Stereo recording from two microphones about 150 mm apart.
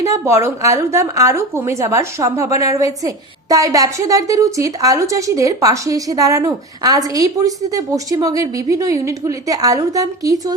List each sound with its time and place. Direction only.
0.0 s a woman's voice: 20° right (ahead or behind)